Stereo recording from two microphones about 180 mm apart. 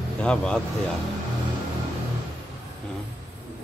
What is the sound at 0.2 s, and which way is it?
Speech, 5° left (ahead or behind).